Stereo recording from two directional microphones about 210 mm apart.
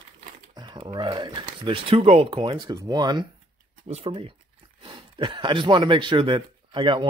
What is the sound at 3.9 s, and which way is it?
Speech, 30° right (ahead or behind).